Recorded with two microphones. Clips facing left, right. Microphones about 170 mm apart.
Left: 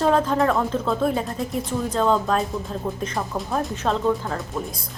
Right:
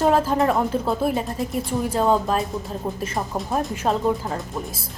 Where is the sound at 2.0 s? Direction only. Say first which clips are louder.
Even; 10° right (ahead or behind).